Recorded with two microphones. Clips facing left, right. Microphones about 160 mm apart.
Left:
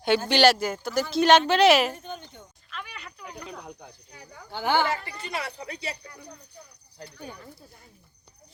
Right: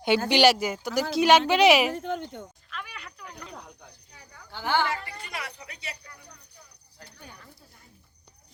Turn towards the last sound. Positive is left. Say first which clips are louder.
# left 7 dB
turn(degrees=20)  # may be behind; listen again after turning